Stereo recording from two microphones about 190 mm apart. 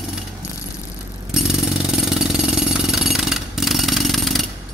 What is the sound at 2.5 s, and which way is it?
Jackhammer, 5° right (ahead or behind).